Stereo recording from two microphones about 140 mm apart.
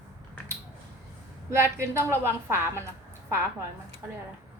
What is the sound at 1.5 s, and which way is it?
A woman's voice, 20° right (ahead or behind).